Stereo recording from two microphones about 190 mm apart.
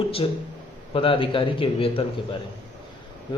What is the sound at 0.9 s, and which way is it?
A man's voice, 30° left (ahead or behind).